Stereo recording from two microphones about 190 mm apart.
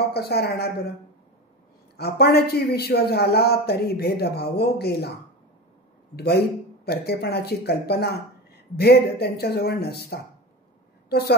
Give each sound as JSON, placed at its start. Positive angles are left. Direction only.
{"t": 0.1, "sound": "a man's voice", "side_deg": 55}
{"t": 2.0, "sound": "a man's voice", "side_deg": 55}
{"t": 6.1, "sound": "a man's voice", "side_deg": 55}